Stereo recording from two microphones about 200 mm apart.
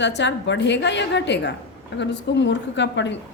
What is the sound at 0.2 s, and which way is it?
A woman's voice, 65° left (ahead or behind).